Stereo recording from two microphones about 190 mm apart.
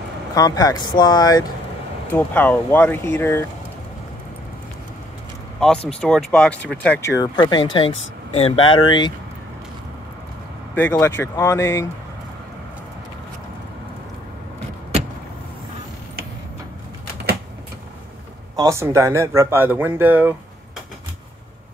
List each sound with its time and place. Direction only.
0.3 s speech: 20° left (ahead or behind)
2.0 s speech: 10° left (ahead or behind)
5.6 s speech: 5° left (ahead or behind); by 9.1 s 25° left (ahead or behind)
10.7 s speech: 10° left (ahead or behind)
18.6 s speech: 15° right (ahead or behind)